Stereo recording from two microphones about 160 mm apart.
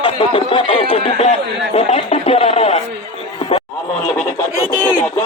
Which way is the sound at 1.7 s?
40° left (ahead or behind).